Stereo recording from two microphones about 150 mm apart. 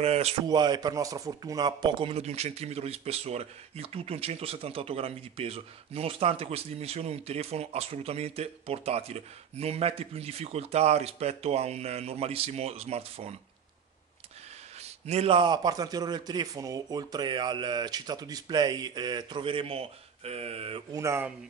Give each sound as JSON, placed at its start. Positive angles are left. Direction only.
{"t": 0.0, "sound": "speech", "side_deg": -45}
{"t": 0.5, "sound": "speech", "side_deg": -25}
{"t": 14.8, "sound": "a man's voice", "side_deg": -45}
{"t": 20.9, "sound": "a man's voice", "side_deg": -20}